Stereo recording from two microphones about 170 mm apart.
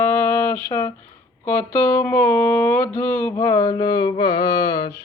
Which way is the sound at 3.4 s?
25° left (ahead or behind).